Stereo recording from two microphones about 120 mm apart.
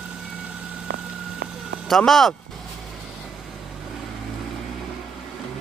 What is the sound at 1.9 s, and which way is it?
Speech, centre (ahead or behind).